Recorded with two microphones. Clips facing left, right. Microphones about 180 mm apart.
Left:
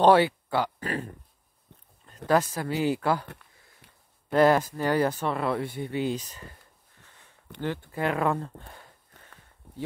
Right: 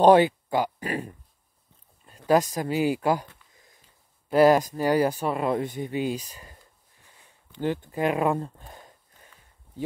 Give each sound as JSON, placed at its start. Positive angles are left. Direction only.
{"t": 0.0, "sound": "speech", "side_deg": -15}
{"t": 2.2, "sound": "speech", "side_deg": -15}
{"t": 4.3, "sound": "speech", "side_deg": -10}
{"t": 7.0, "sound": "a sound", "side_deg": -10}
{"t": 7.6, "sound": "speech", "side_deg": -15}